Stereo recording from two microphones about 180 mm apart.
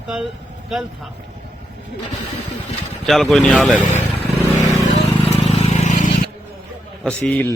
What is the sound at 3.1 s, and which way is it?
Speech, centre (ahead or behind).